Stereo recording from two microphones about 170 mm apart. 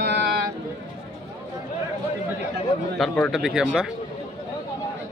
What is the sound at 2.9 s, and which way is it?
Speech, centre (ahead or behind).